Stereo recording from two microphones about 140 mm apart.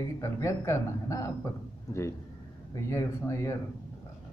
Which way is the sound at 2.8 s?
20° left (ahead or behind).